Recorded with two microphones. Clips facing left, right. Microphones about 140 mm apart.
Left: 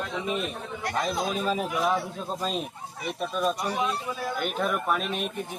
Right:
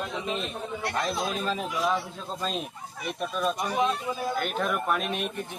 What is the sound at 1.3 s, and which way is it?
A man's voice, 10° left (ahead or behind).